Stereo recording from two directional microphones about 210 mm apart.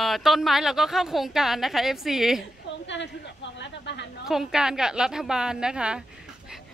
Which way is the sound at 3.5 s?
55° left (ahead or behind).